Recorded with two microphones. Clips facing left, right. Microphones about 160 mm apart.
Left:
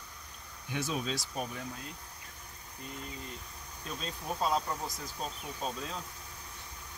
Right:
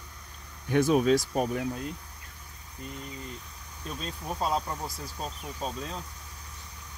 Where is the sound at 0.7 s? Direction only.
55° right (ahead or behind).